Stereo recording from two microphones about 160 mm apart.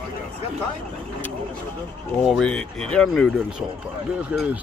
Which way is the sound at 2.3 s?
5° left (ahead or behind).